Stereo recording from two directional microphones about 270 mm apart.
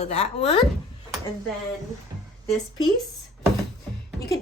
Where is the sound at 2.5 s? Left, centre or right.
Centre.